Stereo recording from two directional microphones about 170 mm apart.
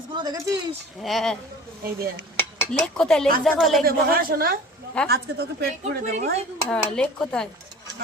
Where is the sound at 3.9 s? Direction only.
60° right (ahead or behind).